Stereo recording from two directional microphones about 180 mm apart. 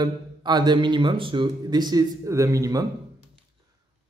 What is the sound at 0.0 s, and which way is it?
A man's voice, 25° right (ahead or behind).